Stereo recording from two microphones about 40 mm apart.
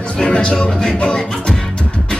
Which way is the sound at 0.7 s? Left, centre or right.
Centre.